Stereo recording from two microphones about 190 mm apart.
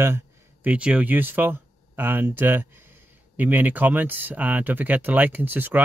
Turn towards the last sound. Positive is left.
turn(degrees=-10)  # may be behind; listen again after turning